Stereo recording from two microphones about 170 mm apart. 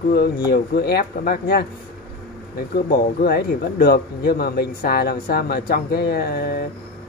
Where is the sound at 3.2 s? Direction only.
65° left (ahead or behind).